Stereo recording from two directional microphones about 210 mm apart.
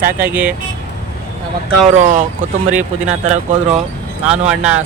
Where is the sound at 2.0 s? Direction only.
35° right (ahead or behind).